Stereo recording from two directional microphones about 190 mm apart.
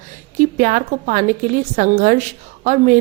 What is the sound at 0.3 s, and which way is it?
A woman's voice, 45° right (ahead or behind).